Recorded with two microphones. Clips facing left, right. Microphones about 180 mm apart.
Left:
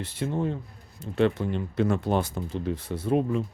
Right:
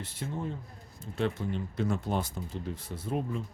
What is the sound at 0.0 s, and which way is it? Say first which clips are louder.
Speech: left 8 dB; 75° left (ahead or behind).